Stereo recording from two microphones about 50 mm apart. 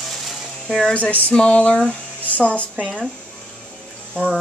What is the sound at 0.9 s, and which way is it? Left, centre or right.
A woman's voice, left.